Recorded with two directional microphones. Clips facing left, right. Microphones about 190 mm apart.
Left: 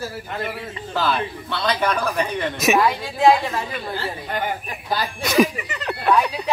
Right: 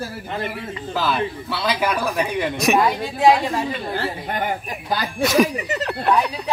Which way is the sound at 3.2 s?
15° right (ahead or behind).